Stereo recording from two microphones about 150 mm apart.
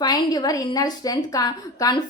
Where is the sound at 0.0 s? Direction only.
25° left (ahead or behind).